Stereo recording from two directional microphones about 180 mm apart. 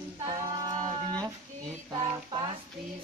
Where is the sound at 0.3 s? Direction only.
20° right (ahead or behind).